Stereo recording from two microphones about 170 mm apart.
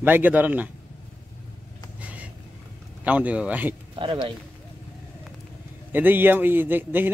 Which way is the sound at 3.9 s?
30° right (ahead or behind).